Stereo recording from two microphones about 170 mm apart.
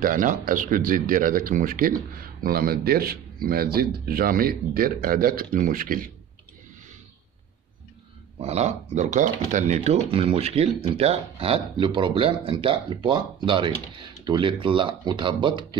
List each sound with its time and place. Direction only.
0.0 s speech: 50° right (ahead or behind)
8.4 s speech: 40° right (ahead or behind)